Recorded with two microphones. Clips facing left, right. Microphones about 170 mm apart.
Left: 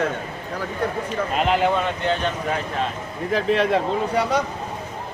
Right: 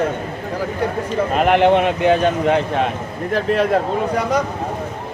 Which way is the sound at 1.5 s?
75° right (ahead or behind).